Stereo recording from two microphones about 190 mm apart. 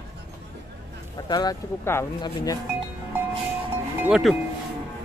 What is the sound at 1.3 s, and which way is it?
Speech, 20° left (ahead or behind).